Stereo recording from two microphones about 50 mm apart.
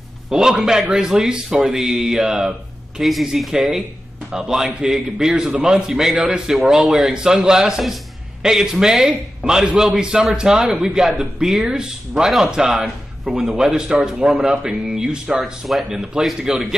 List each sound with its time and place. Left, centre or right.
0.3 s a man's voice: centre